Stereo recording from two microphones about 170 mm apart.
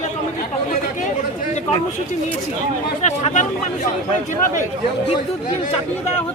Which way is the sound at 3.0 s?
45° left (ahead or behind).